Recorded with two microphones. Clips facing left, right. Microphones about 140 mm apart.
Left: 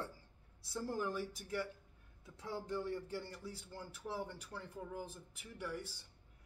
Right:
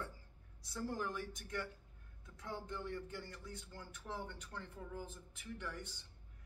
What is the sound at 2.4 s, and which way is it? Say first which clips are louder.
Speech: left 4 dB; 35° left (ahead or behind).